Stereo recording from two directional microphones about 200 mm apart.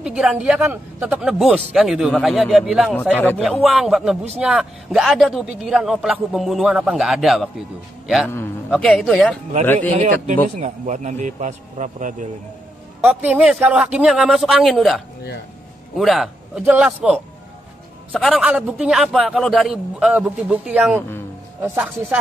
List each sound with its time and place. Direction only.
0.0 s a man's voice: 5° right (ahead or behind)
3.0 s speech: 10° left (ahead or behind)
3.3 s a man's voice: centre (ahead or behind)
9.8 s a man's voice: 35° right (ahead or behind)
13.0 s a man's voice: 5° right (ahead or behind)
16.0 s a man's voice: centre (ahead or behind)